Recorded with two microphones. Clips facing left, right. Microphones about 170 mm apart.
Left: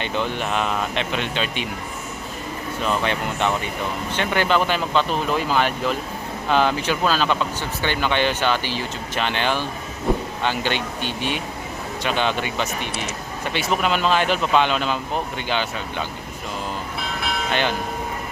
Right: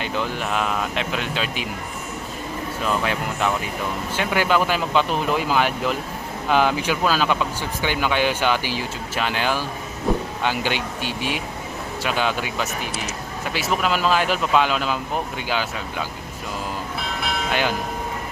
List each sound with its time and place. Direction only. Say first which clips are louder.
0.0 s speech: left 1 dB; 5° right (ahead or behind)
2.8 s speech: left 1 dB; 5° right (ahead or behind)
17.0 s church bell: even; centre (ahead or behind)